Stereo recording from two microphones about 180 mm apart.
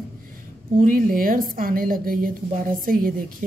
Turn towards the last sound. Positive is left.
turn(degrees=-50)  # may be behind; listen again after turning